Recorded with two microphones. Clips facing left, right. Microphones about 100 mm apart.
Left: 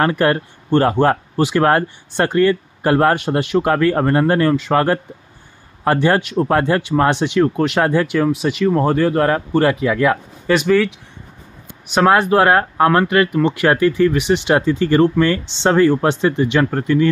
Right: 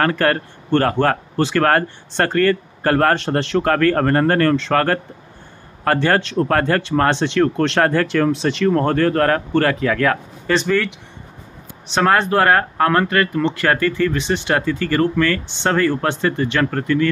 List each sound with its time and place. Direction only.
0.0 s speech: 20° left (ahead or behind)
11.9 s speech: 10° left (ahead or behind)